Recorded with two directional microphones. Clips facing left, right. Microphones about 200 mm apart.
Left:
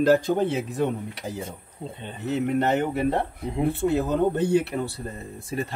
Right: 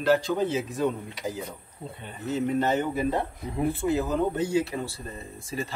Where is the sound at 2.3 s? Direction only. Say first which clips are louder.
Left 2 dB; 65° left (ahead or behind).